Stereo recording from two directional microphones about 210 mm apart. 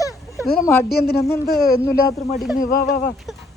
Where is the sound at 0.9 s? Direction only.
50° left (ahead or behind).